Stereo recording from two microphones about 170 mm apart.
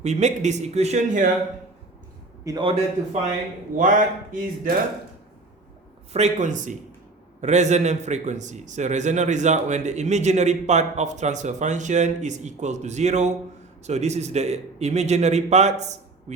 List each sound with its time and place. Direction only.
0.0 s a man's voice: 40° right (ahead or behind)
2.4 s a man's voice: 20° right (ahead or behind)
2.6 s a man's voice: 35° right (ahead or behind)
3.8 s a man's voice: 50° right (ahead or behind)
6.1 s a man's voice: 45° right (ahead or behind)